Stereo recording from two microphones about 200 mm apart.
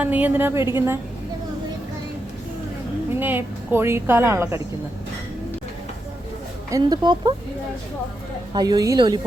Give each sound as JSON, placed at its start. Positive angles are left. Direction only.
{"t": 0.0, "sound": "a woman's voice", "side_deg": -10}
{"t": 3.2, "sound": "a woman's voice", "side_deg": -10}
{"t": 6.7, "sound": "speech", "side_deg": -20}
{"t": 8.5, "sound": "speech", "side_deg": -20}